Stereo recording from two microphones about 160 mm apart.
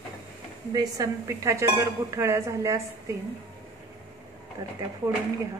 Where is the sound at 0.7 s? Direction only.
20° right (ahead or behind).